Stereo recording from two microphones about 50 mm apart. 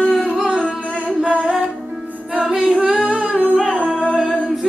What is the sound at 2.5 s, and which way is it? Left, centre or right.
Singing, centre.